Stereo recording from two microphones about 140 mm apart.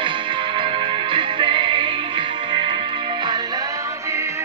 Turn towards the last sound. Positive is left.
turn(degrees=-20)  # may be behind; listen again after turning